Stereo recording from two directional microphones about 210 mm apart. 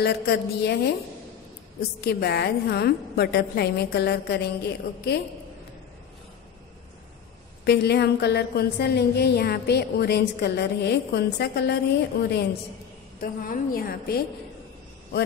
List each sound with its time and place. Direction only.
0.0 s a woman's voice: 50° left (ahead or behind)
1.8 s a woman's voice: 50° left (ahead or behind)
7.6 s a woman's voice: 55° left (ahead or behind)
13.2 s a woman's voice: 40° left (ahead or behind)